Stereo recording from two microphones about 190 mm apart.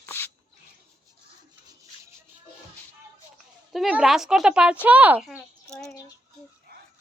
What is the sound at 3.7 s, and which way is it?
A woman's voice, 5° right (ahead or behind).